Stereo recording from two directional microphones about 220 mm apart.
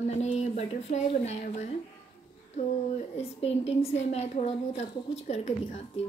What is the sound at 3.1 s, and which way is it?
Child singing, 30° left (ahead or behind).